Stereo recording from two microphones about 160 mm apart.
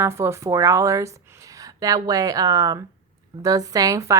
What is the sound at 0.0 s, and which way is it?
A woman's voice, 15° right (ahead or behind).